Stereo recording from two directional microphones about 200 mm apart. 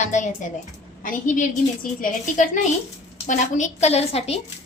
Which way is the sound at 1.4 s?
40° left (ahead or behind).